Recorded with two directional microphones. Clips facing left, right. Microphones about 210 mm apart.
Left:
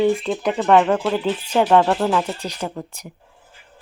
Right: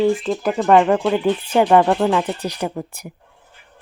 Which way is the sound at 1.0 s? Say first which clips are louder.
Right 3 dB; 10° right (ahead or behind).